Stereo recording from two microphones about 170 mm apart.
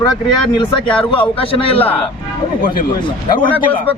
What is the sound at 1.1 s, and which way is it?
Speech, 30° left (ahead or behind).